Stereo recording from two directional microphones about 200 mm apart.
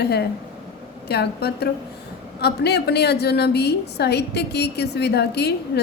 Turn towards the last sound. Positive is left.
turn(degrees=55)  # may be behind; listen again after turning